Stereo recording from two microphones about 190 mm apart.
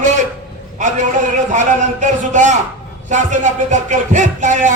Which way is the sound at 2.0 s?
40° right (ahead or behind).